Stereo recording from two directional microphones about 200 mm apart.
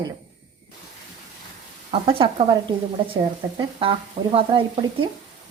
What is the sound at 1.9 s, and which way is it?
Speech, 25° right (ahead or behind).